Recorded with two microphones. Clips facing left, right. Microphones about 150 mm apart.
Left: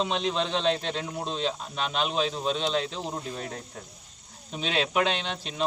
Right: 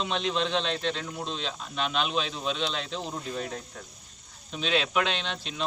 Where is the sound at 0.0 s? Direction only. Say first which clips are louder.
Left 1 dB; 40° left (ahead or behind).